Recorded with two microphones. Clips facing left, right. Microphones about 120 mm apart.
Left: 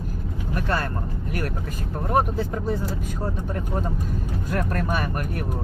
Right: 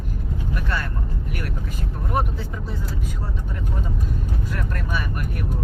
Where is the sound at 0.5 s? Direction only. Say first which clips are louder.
Left 4 dB; 40° left (ahead or behind).